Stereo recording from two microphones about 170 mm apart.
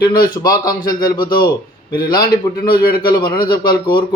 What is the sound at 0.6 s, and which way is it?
Speech, 55° left (ahead or behind).